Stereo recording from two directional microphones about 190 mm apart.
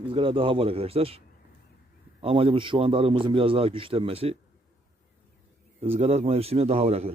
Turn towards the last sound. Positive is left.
turn(degrees=-35)  # may be behind; listen again after turning